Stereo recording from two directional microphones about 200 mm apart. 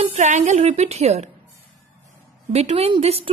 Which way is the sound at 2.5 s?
30° right (ahead or behind).